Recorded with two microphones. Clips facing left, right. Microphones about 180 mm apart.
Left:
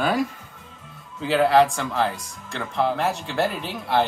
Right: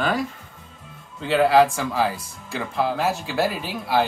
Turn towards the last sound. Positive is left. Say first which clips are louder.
# even
turn(degrees=-5)  # may be behind; listen again after turning